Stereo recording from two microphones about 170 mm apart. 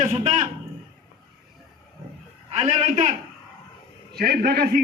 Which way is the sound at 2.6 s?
40° right (ahead or behind).